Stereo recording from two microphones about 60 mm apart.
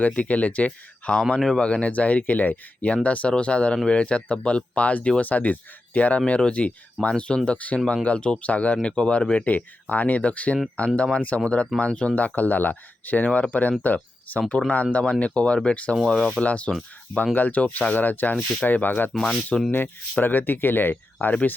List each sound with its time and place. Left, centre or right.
0.2 s speech: left
16.0 s speech: centre
16.4 s speech: left
19.1 s speech: centre
19.7 s speech: left